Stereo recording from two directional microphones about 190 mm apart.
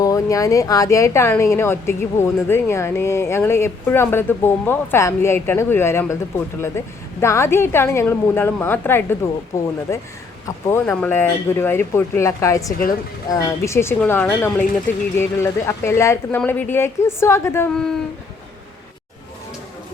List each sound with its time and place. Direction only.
0.0 s a woman's voice: 20° left (ahead or behind)